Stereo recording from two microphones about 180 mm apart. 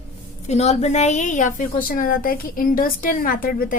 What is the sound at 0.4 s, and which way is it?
A woman's voice, 35° left (ahead or behind).